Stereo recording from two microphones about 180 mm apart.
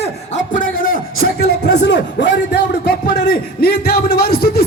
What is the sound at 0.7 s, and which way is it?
Speech, 50° left (ahead or behind).